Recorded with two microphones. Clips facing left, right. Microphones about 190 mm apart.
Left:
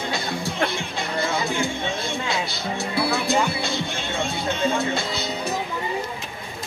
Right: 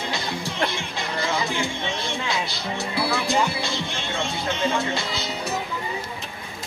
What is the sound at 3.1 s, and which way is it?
Music, 25° left (ahead or behind).